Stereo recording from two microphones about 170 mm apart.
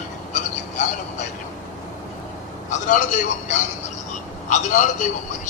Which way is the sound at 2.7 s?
50° left (ahead or behind).